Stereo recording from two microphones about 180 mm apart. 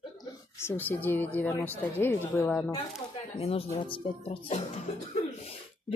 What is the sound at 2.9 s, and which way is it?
Speech, 35° left (ahead or behind).